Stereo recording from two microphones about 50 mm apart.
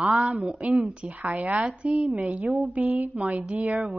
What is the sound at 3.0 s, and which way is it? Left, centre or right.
Speech, right.